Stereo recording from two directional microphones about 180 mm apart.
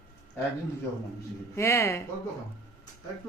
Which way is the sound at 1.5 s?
15° left (ahead or behind).